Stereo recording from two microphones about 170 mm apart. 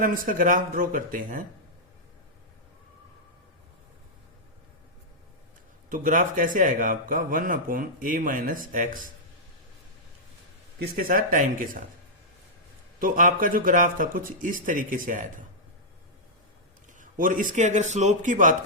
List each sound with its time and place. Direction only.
0.0 s speech: 55° right (ahead or behind)
5.9 s speech: 50° right (ahead or behind)
10.8 s speech: 55° right (ahead or behind)
13.0 s speech: 55° right (ahead or behind)
17.0 s speech: 50° right (ahead or behind)